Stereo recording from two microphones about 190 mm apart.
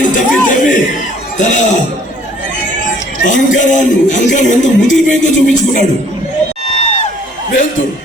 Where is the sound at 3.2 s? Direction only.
40° left (ahead or behind).